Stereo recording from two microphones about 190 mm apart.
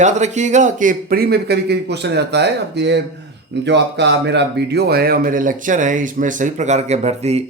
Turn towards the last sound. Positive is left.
turn(degrees=-35)  # may be behind; listen again after turning